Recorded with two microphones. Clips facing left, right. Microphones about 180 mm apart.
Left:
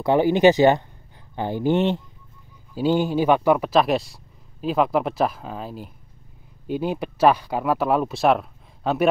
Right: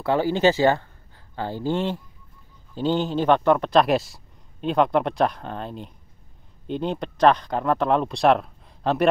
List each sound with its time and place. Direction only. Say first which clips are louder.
0.0 s speech: left 4 dB; 15° left (ahead or behind)
2.7 s speech: left 3 dB; 10° left (ahead or behind)